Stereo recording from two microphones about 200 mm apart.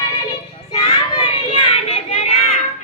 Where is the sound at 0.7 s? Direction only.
30° left (ahead or behind).